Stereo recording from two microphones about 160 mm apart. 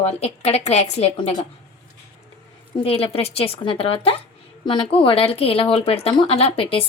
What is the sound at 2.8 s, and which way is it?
Speech, 35° left (ahead or behind).